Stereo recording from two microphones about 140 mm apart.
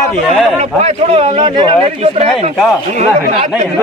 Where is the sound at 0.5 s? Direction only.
45° right (ahead or behind).